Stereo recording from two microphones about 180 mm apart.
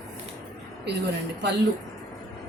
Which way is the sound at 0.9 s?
70° right (ahead or behind).